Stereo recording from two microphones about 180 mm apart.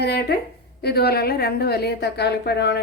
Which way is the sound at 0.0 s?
65° left (ahead or behind).